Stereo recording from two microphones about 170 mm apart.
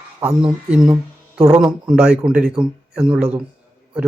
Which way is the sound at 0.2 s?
5° right (ahead or behind).